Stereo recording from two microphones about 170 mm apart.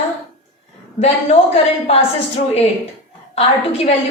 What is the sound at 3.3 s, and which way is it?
Speech, 35° left (ahead or behind).